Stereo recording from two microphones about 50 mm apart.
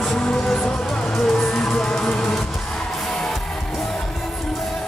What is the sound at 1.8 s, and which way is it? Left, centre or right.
Music, centre.